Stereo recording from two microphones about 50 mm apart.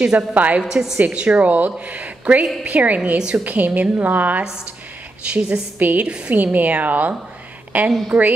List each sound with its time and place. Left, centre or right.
0.3 s a woman's voice: right
0.6 s a woman's voice: centre
0.9 s a woman's voice: right
3.0 s a woman's voice: centre
3.4 s a woman's voice: right
5.2 s a woman's voice: right
5.8 s a woman's voice: right
6.0 s a woman's voice: right
6.3 s a woman's voice: right